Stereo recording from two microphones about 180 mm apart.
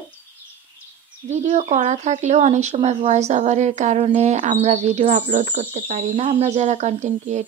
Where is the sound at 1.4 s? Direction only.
40° right (ahead or behind).